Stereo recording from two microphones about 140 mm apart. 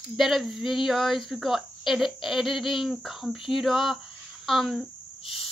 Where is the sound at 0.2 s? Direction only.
Centre (ahead or behind).